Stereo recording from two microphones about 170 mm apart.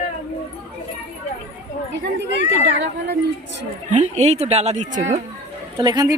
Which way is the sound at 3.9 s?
45° right (ahead or behind).